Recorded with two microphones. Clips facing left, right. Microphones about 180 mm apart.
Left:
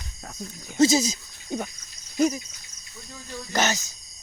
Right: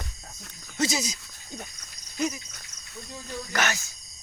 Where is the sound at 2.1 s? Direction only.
40° left (ahead or behind).